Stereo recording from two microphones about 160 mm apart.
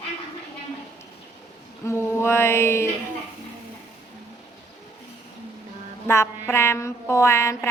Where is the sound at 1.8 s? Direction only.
15° left (ahead or behind).